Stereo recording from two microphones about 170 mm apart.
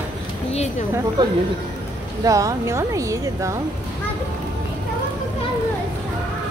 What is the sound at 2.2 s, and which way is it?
Speech, 20° right (ahead or behind).